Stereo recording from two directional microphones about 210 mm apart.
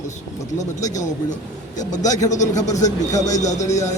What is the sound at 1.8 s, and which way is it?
Speech, 35° left (ahead or behind).